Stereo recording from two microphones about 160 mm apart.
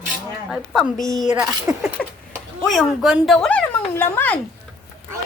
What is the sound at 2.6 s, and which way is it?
Speech, centre (ahead or behind).